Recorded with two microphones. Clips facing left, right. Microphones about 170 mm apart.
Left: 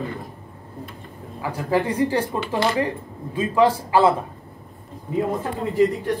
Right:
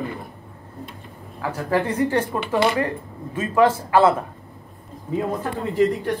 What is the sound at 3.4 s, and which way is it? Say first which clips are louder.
Speech: even; 15° left (ahead or behind).